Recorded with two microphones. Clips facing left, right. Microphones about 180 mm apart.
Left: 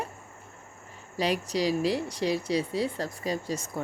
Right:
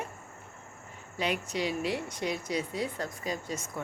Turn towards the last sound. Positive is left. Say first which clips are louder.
# left 4 dB
turn(degrees=35)  # may be behind; listen again after turning